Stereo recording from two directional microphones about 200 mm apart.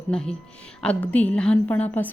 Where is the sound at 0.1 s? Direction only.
5° left (ahead or behind).